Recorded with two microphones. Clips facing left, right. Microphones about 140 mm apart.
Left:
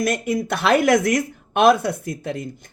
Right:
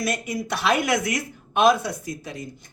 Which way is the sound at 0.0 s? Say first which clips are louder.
Left 5 dB; 50° left (ahead or behind).